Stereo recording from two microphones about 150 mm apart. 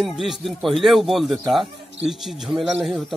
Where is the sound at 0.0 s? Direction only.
Centre (ahead or behind).